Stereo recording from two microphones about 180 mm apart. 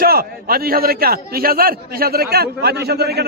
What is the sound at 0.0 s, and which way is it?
A man's voice, 55° right (ahead or behind).